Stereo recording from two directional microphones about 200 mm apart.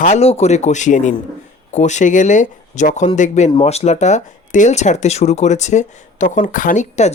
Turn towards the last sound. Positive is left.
turn(degrees=35)  # may be behind; listen again after turning